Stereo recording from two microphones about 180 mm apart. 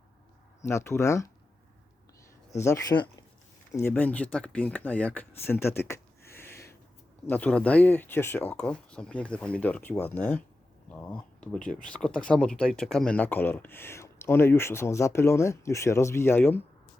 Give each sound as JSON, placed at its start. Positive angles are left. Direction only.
{"t": 0.6, "sound": "speech", "side_deg": 15}
{"t": 2.9, "sound": "speech", "side_deg": 35}
{"t": 3.7, "sound": "speech", "side_deg": 15}
{"t": 5.9, "sound": "a sound", "side_deg": 15}
{"t": 7.3, "sound": "speech", "side_deg": 10}